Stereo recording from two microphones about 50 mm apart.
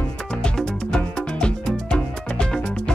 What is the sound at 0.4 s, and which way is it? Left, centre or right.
Music, centre.